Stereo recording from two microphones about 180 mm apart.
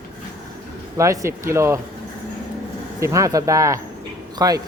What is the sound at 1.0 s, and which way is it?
Speech, 15° right (ahead or behind).